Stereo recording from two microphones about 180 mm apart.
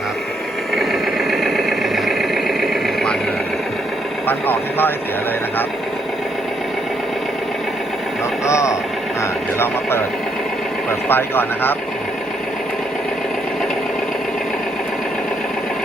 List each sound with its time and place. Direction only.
1.3 s vehicle: centre (ahead or behind)
4.3 s speech: 10° left (ahead or behind)
8.4 s speech: 15° left (ahead or behind)
11.1 s speech: 10° left (ahead or behind)